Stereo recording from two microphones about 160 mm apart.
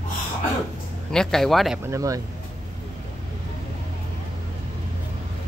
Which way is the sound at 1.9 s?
20° right (ahead or behind).